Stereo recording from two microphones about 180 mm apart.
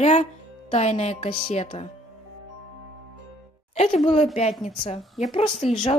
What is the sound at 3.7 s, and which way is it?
Speech, 35° left (ahead or behind).